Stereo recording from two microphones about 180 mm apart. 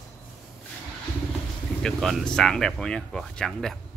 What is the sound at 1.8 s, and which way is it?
Speech, centre (ahead or behind).